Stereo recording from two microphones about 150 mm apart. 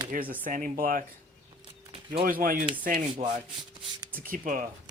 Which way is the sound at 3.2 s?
50° right (ahead or behind).